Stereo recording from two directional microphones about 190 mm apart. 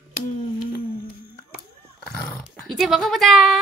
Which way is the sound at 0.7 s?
50° left (ahead or behind).